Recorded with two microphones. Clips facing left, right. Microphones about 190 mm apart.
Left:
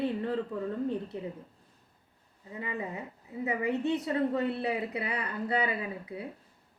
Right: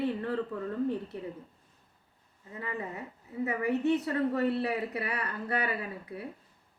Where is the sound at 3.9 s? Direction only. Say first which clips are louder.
Right 1 dB; 20° left (ahead or behind).